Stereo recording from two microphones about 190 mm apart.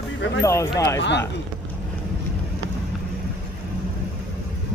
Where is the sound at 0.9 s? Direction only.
65° left (ahead or behind).